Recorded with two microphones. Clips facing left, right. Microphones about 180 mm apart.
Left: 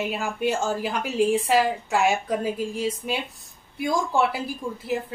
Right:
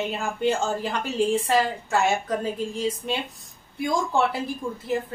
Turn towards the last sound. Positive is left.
turn(degrees=20)  # may be behind; listen again after turning